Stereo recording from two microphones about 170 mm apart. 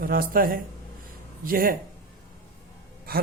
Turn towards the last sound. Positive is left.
turn(degrees=-60)  # may be behind; listen again after turning